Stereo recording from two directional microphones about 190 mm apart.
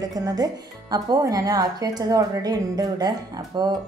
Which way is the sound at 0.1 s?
20° right (ahead or behind).